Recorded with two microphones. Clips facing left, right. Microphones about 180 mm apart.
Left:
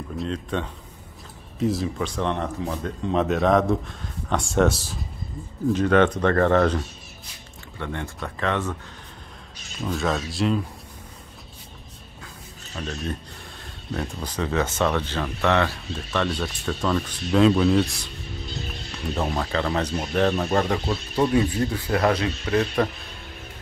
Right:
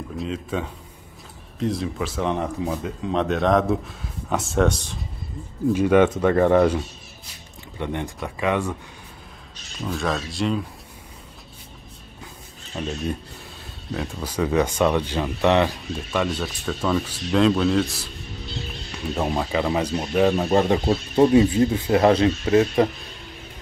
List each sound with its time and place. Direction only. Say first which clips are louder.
0.2 s speech: even; 5° right (ahead or behind)
5.7 s speech: right 2 dB; 10° right (ahead or behind)
7.8 s speech: right 3 dB; 15° right (ahead or behind)
9.8 s speech: even; centre (ahead or behind)
12.7 s speech: right 3 dB; 15° right (ahead or behind)
19.1 s speech: right 2 dB; 10° right (ahead or behind)